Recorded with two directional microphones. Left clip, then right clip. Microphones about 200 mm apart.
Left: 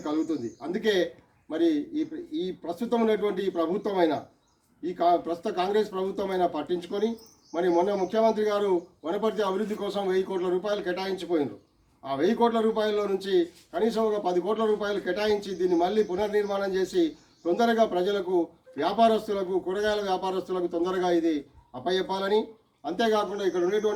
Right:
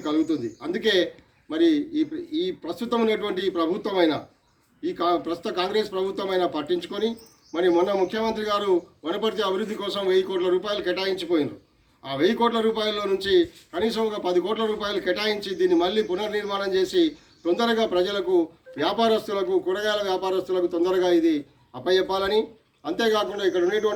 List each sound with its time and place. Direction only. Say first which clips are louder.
0.0 s a man's voice: right 4 dB; 5° left (ahead or behind)